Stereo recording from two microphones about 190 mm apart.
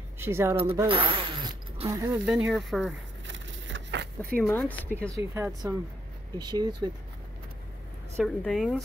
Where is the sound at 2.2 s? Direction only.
5° right (ahead or behind).